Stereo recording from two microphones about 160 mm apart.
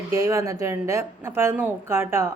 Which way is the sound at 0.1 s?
20° right (ahead or behind).